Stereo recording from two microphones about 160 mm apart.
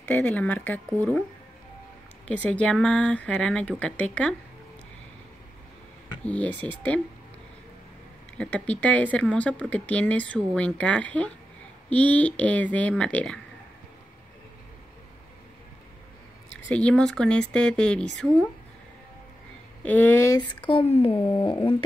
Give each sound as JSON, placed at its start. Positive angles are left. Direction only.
{"t": 0.0, "sound": "speech", "side_deg": 10}
{"t": 2.2, "sound": "speech", "side_deg": 10}
{"t": 6.2, "sound": "speech", "side_deg": 10}
{"t": 8.4, "sound": "speech", "side_deg": 5}
{"t": 16.6, "sound": "speech", "side_deg": 5}
{"t": 19.8, "sound": "speech", "side_deg": 10}
{"t": 20.6, "sound": "speech", "side_deg": 35}